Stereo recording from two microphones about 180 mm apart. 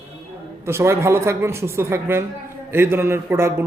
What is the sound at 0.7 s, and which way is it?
Speech, 15° right (ahead or behind).